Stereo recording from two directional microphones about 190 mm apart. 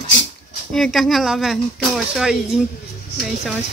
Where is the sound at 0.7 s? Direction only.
Centre (ahead or behind).